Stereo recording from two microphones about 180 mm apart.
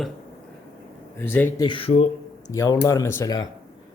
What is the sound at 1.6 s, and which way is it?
Speech, 30° left (ahead or behind).